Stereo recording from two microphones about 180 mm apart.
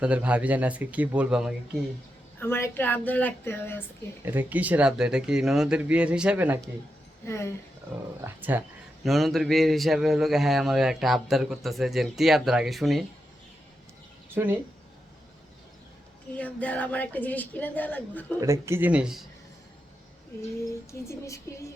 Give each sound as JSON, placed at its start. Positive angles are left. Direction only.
{"t": 0.0, "sound": "speech", "side_deg": -5}
{"t": 2.4, "sound": "a woman's voice", "side_deg": 10}
{"t": 4.3, "sound": "a man's voice", "side_deg": -10}
{"t": 7.3, "sound": "a woman's voice", "side_deg": 15}
{"t": 8.2, "sound": "speech", "side_deg": -10}
{"t": 9.0, "sound": "a man's voice", "side_deg": 0}
{"t": 14.3, "sound": "speech", "side_deg": -10}
{"t": 16.3, "sound": "a woman's voice", "side_deg": 10}
{"t": 18.3, "sound": "speech", "side_deg": -15}
{"t": 21.1, "sound": "a woman's voice", "side_deg": 15}